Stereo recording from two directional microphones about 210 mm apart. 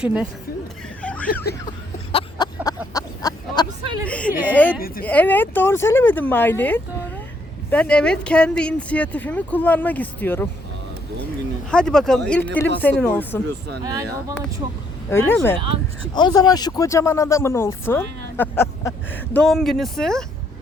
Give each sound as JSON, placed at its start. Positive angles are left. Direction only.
{"t": 0.0, "sound": "speech", "side_deg": -5}
{"t": 1.0, "sound": "snicker", "side_deg": 5}
{"t": 2.1, "sound": "a sound", "side_deg": 20}
{"t": 4.0, "sound": "speech", "side_deg": 5}
{"t": 11.7, "sound": "speech", "side_deg": 5}
{"t": 13.8, "sound": "speech", "side_deg": -15}
{"t": 15.1, "sound": "speech", "side_deg": 10}